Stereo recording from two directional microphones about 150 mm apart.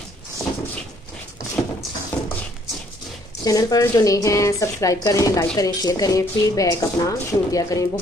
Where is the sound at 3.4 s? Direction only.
25° left (ahead or behind).